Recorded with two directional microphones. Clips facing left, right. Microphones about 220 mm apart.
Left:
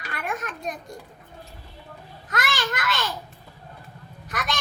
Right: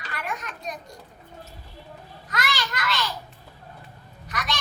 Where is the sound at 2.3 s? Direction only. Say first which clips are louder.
Left 2 dB; 50° left (ahead or behind).